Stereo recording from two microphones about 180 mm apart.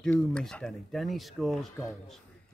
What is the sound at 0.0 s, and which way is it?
Speech, 5° left (ahead or behind).